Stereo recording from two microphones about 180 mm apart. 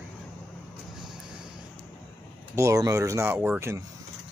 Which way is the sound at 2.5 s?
15° right (ahead or behind).